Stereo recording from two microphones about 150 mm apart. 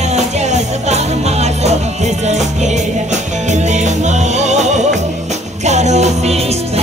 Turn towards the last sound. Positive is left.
turn(degrees=-45)  # may be behind; listen again after turning